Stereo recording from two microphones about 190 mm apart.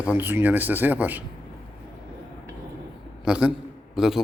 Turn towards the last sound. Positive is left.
turn(degrees=0)  # may be behind; listen again after turning